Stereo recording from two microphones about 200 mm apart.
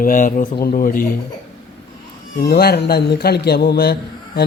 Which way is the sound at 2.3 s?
55° left (ahead or behind).